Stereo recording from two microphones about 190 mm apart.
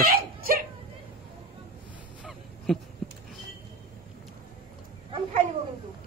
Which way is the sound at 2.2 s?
Centre (ahead or behind).